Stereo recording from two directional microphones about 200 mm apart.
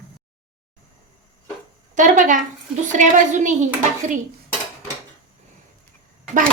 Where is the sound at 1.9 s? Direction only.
40° right (ahead or behind).